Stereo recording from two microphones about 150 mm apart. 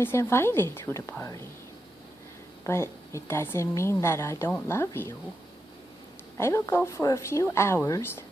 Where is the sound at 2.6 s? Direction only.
20° left (ahead or behind).